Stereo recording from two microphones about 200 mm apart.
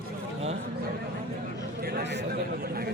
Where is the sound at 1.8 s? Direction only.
50° right (ahead or behind).